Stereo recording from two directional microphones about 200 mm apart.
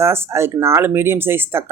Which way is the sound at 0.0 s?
10° right (ahead or behind).